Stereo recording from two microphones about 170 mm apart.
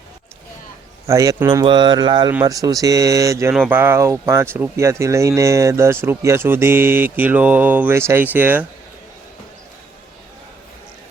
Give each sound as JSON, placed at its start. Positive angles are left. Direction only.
{"t": 1.0, "sound": "speech", "side_deg": -20}